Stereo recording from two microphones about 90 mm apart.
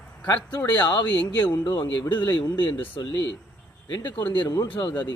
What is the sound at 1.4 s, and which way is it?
Speech, 55° left (ahead or behind).